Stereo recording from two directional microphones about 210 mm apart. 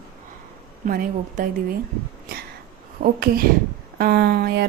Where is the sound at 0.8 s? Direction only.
40° right (ahead or behind).